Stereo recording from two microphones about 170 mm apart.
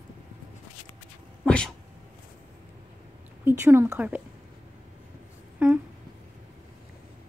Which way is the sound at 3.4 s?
15° right (ahead or behind).